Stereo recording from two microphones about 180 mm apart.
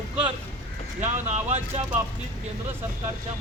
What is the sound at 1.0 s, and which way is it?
Speech, 40° right (ahead or behind).